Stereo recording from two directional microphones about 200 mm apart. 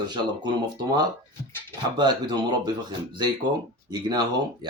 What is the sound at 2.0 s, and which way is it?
Speech, 20° right (ahead or behind).